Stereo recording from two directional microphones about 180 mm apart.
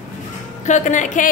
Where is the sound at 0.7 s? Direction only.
45° left (ahead or behind).